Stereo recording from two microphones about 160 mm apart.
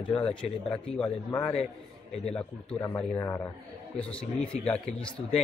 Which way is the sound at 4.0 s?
5° left (ahead or behind).